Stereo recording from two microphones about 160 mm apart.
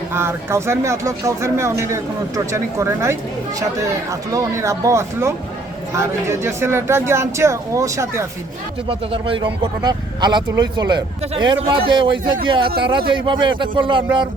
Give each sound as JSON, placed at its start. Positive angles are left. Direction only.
{"t": 0.1, "sound": "a man's voice", "side_deg": -15}
{"t": 8.9, "sound": "a man's voice", "side_deg": -35}